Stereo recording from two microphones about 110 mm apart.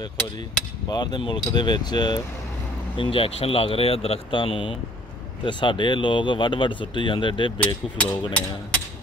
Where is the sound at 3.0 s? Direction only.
55° left (ahead or behind).